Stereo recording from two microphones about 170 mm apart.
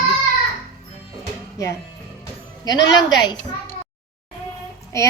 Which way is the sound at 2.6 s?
20° left (ahead or behind).